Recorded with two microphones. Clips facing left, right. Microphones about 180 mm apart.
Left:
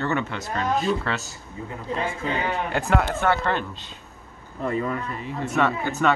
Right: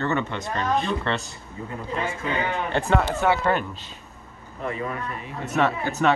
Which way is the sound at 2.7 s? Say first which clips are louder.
Right 2 dB; centre (ahead or behind).